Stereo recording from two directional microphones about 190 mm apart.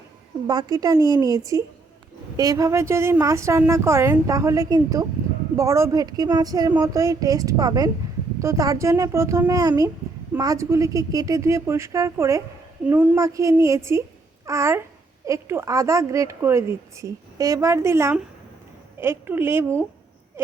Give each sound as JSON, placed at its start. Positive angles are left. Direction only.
{"t": 0.4, "sound": "speech", "side_deg": -20}